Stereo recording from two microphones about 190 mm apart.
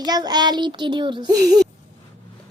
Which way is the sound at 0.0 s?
20° right (ahead or behind).